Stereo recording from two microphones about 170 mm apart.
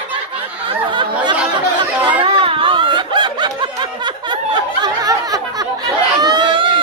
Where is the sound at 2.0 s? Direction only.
30° right (ahead or behind).